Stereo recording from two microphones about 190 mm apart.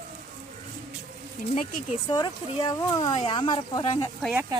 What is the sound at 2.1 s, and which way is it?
Speech, 20° left (ahead or behind).